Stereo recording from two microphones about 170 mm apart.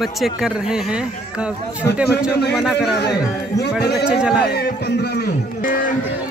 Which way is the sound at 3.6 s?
75° left (ahead or behind).